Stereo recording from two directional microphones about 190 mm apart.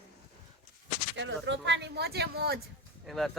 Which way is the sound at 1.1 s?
70° right (ahead or behind).